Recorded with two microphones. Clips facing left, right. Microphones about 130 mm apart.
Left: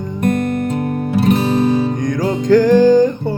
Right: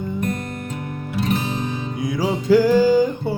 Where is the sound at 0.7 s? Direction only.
40° left (ahead or behind).